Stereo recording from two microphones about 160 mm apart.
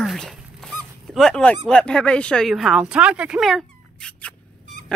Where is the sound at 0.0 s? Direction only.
Centre (ahead or behind).